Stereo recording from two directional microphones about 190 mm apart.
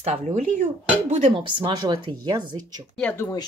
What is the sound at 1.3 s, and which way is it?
Speech, 25° right (ahead or behind).